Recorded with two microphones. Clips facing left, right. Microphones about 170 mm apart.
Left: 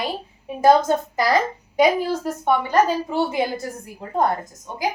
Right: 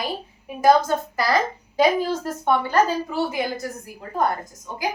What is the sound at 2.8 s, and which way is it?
Speech, 25° left (ahead or behind).